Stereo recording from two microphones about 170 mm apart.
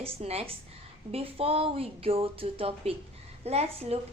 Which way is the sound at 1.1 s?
35° right (ahead or behind).